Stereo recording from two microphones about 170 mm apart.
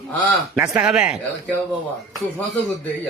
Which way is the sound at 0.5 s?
5° right (ahead or behind).